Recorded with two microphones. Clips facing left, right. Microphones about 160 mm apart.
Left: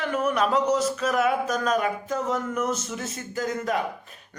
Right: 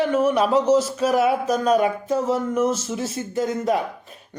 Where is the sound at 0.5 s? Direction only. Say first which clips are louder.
Right 5 dB; 30° right (ahead or behind).